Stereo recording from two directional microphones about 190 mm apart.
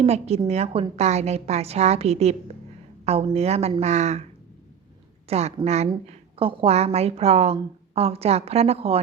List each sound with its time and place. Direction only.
0.0 s a woman's voice: 35° right (ahead or behind)
5.3 s a woman's voice: 35° right (ahead or behind)